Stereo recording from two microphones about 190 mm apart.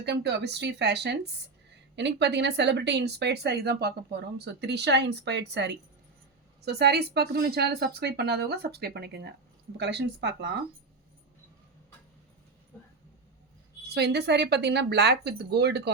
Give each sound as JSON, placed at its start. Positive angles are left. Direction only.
{"t": 0.0, "sound": "speech", "side_deg": -65}
{"t": 12.7, "sound": "dog", "side_deg": 10}
{"t": 13.9, "sound": "speech", "side_deg": -60}